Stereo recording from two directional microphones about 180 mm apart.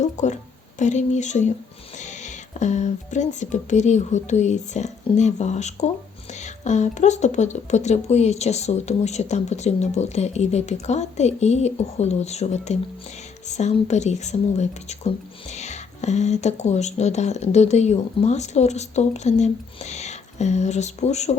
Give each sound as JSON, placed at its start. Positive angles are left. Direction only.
{"t": 0.0, "sound": "speech", "side_deg": 40}